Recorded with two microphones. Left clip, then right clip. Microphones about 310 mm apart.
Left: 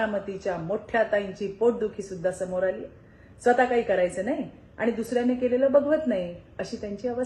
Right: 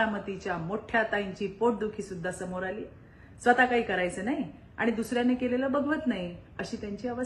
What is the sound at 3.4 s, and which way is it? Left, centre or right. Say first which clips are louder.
A woman's voice: left 2 dB; centre.